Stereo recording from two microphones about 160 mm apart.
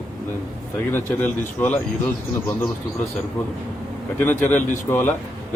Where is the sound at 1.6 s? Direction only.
10° left (ahead or behind).